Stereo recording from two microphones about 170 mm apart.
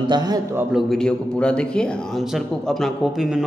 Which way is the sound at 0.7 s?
Centre (ahead or behind).